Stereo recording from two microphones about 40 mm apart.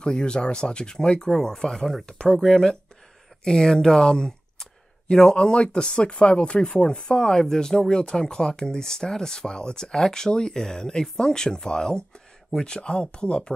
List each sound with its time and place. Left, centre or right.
0.0 s speech: left